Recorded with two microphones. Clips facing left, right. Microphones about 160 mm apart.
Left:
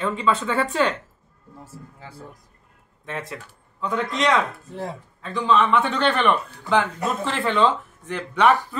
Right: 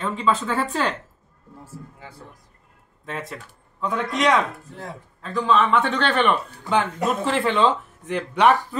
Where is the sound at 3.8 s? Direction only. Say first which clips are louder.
Even; centre (ahead or behind).